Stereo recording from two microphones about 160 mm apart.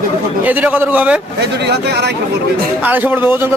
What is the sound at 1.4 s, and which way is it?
Speech, 90° right.